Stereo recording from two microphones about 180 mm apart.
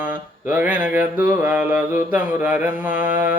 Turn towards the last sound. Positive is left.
turn(degrees=-10)  # may be behind; listen again after turning